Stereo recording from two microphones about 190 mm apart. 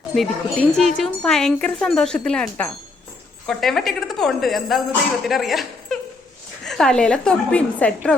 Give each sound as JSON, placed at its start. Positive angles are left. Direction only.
{"t": 0.2, "sound": "speech", "side_deg": 0}